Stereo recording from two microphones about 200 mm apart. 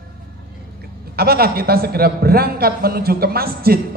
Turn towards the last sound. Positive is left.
turn(degrees=-50)  # may be behind; listen again after turning